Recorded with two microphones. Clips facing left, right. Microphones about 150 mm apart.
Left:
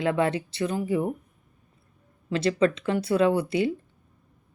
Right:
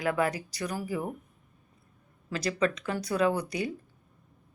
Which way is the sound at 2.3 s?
30° left (ahead or behind).